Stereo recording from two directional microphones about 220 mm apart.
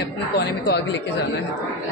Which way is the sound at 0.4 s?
50° left (ahead or behind).